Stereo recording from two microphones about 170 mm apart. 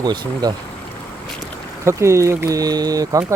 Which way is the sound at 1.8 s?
15° right (ahead or behind).